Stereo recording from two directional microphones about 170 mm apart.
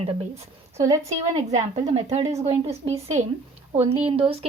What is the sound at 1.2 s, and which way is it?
Speech, 40° right (ahead or behind).